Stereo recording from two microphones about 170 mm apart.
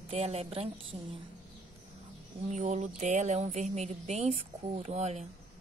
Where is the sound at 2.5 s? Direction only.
45° right (ahead or behind).